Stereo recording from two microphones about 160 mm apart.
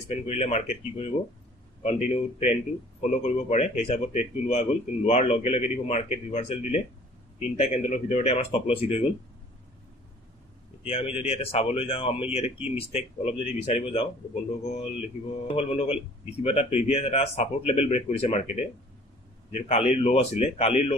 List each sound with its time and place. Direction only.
0.1 s a man's voice: 45° left (ahead or behind)
10.8 s speech: 35° left (ahead or behind)